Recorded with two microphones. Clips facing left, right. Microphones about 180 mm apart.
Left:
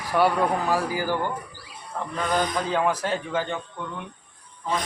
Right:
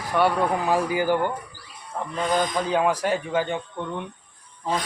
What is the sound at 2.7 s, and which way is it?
Speech, 15° right (ahead or behind).